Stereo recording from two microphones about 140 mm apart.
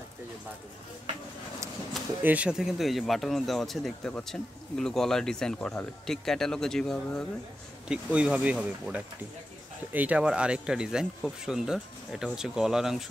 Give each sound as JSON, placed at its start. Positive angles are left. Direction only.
{"t": 2.2, "sound": "speech", "side_deg": -10}
{"t": 7.9, "sound": "speech", "side_deg": -10}